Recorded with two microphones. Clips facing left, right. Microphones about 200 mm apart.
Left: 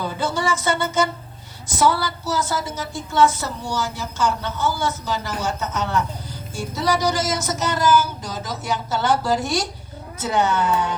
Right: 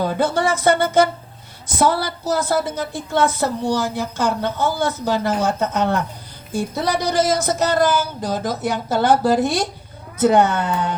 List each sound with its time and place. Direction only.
0.0 s a woman's voice: 55° right (ahead or behind)